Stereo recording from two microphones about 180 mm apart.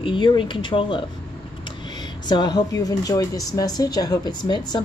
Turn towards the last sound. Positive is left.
turn(degrees=25)  # may be behind; listen again after turning